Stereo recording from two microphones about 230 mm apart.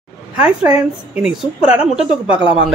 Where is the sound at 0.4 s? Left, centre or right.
Centre.